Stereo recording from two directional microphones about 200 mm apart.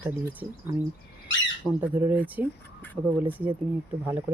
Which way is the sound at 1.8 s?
10° right (ahead or behind).